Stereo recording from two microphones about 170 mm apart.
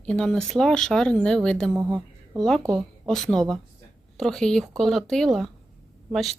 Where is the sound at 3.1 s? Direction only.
5° left (ahead or behind).